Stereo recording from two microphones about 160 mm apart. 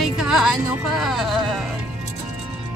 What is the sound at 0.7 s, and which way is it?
Speech, centre (ahead or behind).